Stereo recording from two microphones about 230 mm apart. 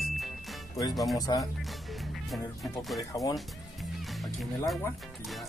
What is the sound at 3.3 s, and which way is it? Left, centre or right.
Music, centre.